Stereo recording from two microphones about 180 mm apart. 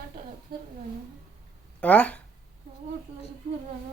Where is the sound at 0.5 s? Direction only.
55° right (ahead or behind).